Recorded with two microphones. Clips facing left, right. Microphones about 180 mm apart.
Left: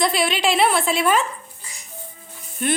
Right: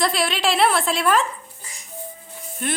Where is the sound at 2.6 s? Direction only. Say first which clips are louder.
Left 4 dB; centre (ahead or behind).